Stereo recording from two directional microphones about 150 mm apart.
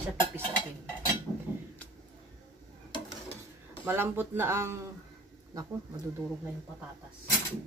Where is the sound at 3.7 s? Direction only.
15° right (ahead or behind).